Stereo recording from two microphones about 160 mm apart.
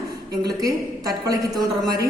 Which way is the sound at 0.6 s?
20° right (ahead or behind).